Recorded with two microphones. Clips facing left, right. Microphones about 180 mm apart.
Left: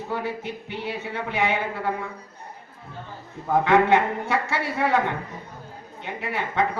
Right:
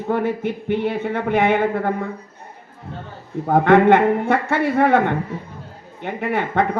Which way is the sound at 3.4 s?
55° right (ahead or behind).